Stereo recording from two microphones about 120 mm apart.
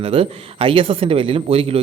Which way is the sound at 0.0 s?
50° right (ahead or behind).